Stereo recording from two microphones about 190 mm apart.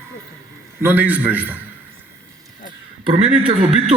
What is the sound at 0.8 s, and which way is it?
Speech, 10° right (ahead or behind).